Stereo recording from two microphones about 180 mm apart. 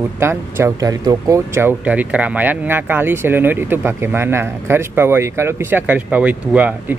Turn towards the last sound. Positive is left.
turn(degrees=-10)  # may be behind; listen again after turning